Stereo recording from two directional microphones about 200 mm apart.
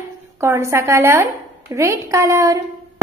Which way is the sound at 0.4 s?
15° right (ahead or behind).